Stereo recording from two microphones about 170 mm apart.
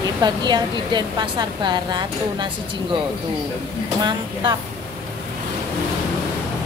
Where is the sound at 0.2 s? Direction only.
25° right (ahead or behind).